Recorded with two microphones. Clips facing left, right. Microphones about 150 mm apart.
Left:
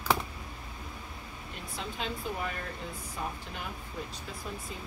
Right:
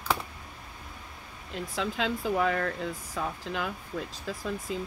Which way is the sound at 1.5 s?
90° right.